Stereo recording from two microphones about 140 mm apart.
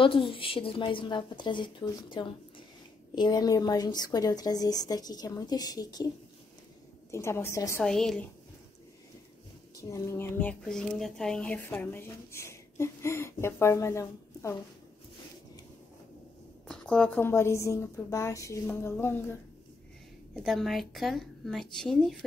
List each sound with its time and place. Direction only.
0.0 s a woman's voice: 40° left (ahead or behind); by 7.8 s 20° left (ahead or behind)
7.8 s a woman's voice: 5° left (ahead or behind)
9.8 s speech: 25° left (ahead or behind)
16.6 s a woman's voice: 5° left (ahead or behind)
17.3 s a woman's voice: 20° left (ahead or behind)
20.4 s a woman's voice: centre (ahead or behind)